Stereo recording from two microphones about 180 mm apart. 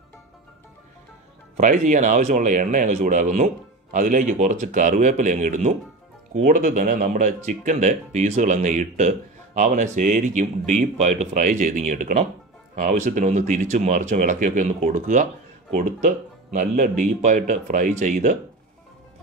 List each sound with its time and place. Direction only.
1.6 s speech: 45° right (ahead or behind)